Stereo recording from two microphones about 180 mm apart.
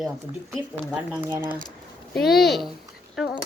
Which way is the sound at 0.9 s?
10° right (ahead or behind).